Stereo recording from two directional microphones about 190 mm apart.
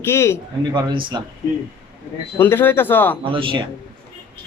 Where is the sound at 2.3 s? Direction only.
10° left (ahead or behind).